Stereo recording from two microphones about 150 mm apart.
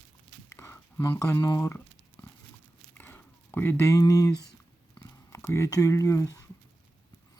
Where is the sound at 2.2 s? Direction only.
15° left (ahead or behind).